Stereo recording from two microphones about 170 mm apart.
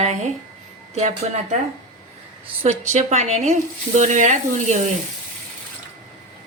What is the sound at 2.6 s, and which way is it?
Speech, 40° right (ahead or behind).